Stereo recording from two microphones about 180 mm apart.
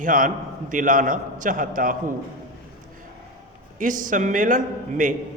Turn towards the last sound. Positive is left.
turn(degrees=-45)  # may be behind; listen again after turning